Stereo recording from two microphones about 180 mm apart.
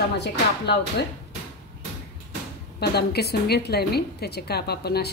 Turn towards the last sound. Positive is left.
turn(degrees=65)  # may be behind; listen again after turning